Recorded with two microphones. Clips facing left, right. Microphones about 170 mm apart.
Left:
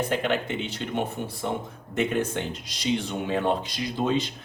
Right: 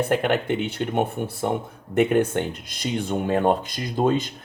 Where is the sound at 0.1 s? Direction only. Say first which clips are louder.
Right 5 dB; 55° right (ahead or behind).